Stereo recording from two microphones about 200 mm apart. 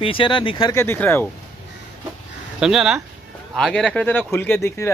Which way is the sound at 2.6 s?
Centre (ahead or behind).